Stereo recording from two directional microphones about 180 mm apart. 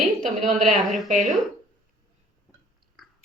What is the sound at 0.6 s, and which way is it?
Speech, centre (ahead or behind).